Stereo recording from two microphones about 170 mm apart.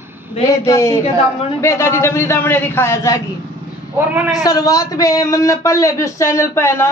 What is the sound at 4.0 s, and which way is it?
Speech, 10° right (ahead or behind).